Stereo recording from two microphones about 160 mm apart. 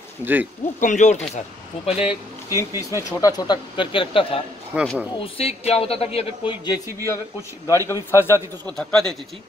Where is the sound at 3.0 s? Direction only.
20° left (ahead or behind).